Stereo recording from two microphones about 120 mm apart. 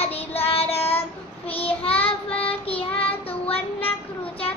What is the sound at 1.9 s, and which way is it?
Child singing, 10° left (ahead or behind).